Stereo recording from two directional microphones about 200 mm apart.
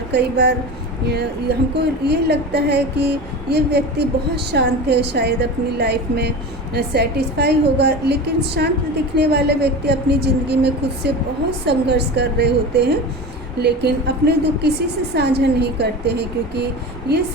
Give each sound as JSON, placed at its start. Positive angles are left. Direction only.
{"t": 0.1, "sound": "a woman's voice", "side_deg": -55}